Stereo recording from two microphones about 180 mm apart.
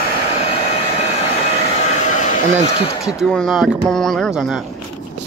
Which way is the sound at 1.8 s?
40° left (ahead or behind).